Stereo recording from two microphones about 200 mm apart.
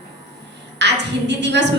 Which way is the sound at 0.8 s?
60° right (ahead or behind).